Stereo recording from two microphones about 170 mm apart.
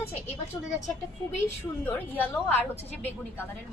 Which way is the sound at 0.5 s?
15° left (ahead or behind).